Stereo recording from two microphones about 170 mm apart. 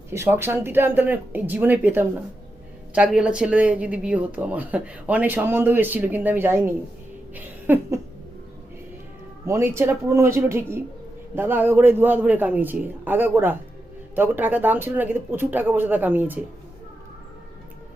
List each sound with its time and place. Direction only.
0.1 s speech: 15° right (ahead or behind)
7.3 s a sound: 10° right (ahead or behind)
9.5 s speech: 15° right (ahead or behind)